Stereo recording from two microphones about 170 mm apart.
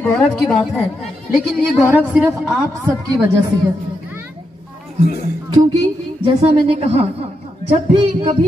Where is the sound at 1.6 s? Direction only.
10° right (ahead or behind).